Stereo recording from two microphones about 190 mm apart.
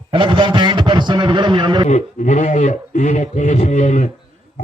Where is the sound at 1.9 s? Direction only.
40° left (ahead or behind).